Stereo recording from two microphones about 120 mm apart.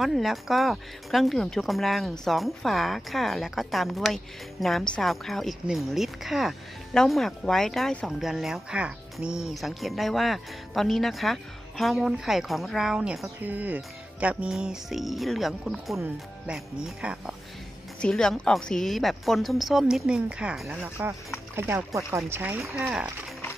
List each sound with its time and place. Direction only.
0.0 s speech: centre (ahead or behind)
18.0 s speech: 5° left (ahead or behind)
21.5 s speech: 20° right (ahead or behind)